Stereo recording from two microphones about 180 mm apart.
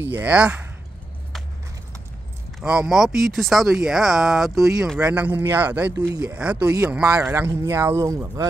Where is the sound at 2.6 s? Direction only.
5° right (ahead or behind).